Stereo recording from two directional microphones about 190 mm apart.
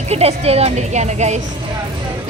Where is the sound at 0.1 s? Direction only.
35° right (ahead or behind).